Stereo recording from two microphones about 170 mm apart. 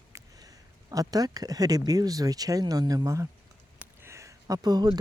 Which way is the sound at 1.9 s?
20° right (ahead or behind).